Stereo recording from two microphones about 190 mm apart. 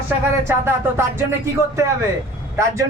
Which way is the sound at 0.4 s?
10° right (ahead or behind).